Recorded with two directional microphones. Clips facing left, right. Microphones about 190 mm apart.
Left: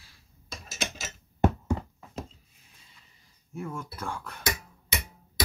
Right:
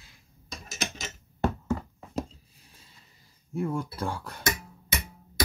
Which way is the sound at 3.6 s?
35° right (ahead or behind).